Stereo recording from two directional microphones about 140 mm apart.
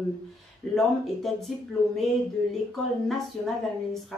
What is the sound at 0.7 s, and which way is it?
Speech, centre (ahead or behind).